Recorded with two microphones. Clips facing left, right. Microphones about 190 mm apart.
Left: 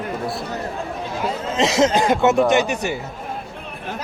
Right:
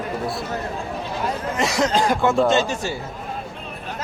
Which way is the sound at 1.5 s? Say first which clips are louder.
Left 4 dB; 20° left (ahead or behind).